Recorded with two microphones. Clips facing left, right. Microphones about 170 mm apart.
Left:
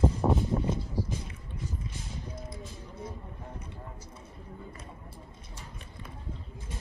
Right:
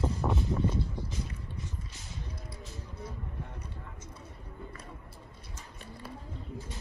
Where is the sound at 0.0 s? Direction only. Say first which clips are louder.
Left 5 dB; 30° left (ahead or behind).